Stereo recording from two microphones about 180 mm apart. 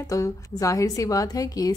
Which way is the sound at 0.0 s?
20° left (ahead or behind).